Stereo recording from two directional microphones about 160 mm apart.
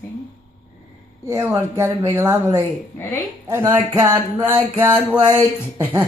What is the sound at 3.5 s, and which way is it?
Speech, 15° right (ahead or behind).